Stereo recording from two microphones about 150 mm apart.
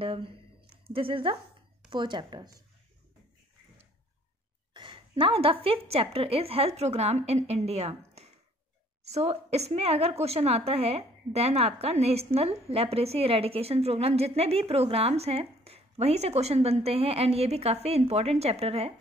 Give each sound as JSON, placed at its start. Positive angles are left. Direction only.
{"t": 0.0, "sound": "a woman's voice", "side_deg": -35}
{"t": 4.7, "sound": "a woman's voice", "side_deg": -35}